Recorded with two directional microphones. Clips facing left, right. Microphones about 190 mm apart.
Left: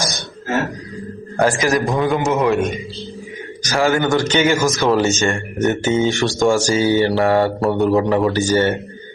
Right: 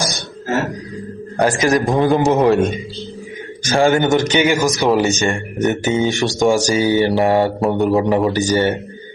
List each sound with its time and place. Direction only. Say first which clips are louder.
1.4 s a man's voice: right 1 dB; 25° right (ahead or behind)